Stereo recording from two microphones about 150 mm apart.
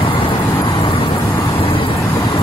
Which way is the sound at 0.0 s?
35° left (ahead or behind).